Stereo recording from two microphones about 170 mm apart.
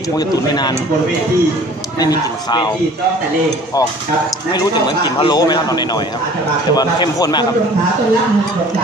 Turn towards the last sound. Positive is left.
turn(degrees=25)  # may be behind; listen again after turning